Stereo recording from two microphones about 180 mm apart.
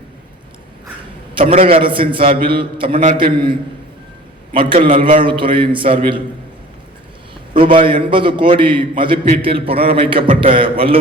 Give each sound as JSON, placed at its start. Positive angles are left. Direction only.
{"t": 1.4, "sound": "a man's voice", "side_deg": -30}
{"t": 2.9, "sound": "a man's voice", "side_deg": -45}
{"t": 3.2, "sound": "a man's voice", "side_deg": -30}
{"t": 4.9, "sound": "a man's voice", "side_deg": -50}
{"t": 5.2, "sound": "a man's voice", "side_deg": -30}
{"t": 7.6, "sound": "a man's voice", "side_deg": -30}